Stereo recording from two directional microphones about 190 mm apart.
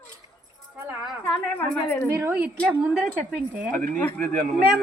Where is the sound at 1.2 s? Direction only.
10° left (ahead or behind).